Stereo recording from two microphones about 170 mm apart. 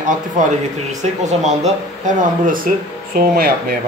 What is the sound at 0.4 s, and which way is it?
A man's voice, 50° right (ahead or behind).